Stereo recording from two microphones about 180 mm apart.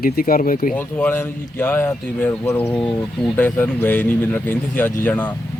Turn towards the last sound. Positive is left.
turn(degrees=10)  # may be behind; listen again after turning